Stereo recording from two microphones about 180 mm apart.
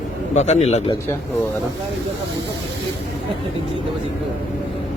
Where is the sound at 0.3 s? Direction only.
40° left (ahead or behind).